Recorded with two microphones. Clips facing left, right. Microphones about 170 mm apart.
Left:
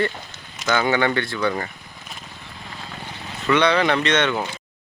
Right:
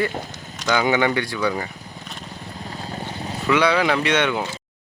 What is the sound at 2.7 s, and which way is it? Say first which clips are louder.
Vehicle: right 5 dB; 40° right (ahead or behind).